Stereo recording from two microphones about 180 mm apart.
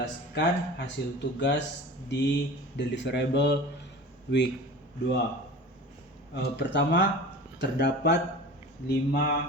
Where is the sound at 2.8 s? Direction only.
75° left (ahead or behind).